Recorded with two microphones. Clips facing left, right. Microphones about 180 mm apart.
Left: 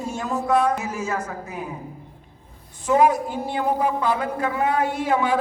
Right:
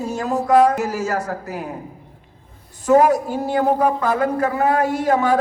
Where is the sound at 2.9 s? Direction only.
40° right (ahead or behind).